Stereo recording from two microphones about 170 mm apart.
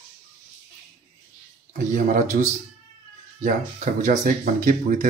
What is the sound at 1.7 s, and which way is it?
Speech, 50° right (ahead or behind).